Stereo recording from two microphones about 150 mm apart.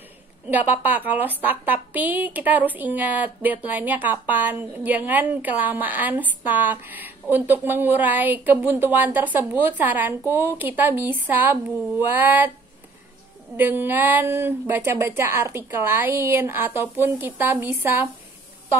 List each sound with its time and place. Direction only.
0.5 s a woman's voice: 10° right (ahead or behind)
13.6 s a woman's voice: 15° right (ahead or behind)